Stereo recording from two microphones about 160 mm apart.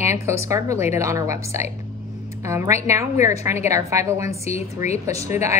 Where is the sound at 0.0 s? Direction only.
15° right (ahead or behind).